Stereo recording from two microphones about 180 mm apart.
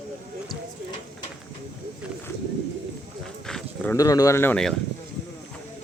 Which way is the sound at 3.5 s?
5° left (ahead or behind).